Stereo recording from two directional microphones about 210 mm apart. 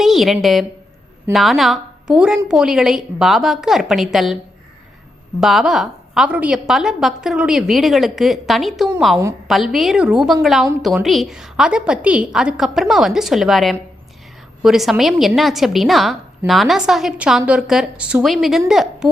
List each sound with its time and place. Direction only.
0.0 s a woman's voice: centre (ahead or behind)
5.4 s a woman's voice: centre (ahead or behind)
18.7 s a sound: centre (ahead or behind)